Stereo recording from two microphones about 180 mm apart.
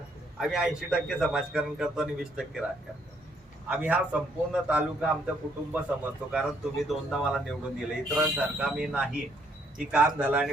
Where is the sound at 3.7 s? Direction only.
5° right (ahead or behind).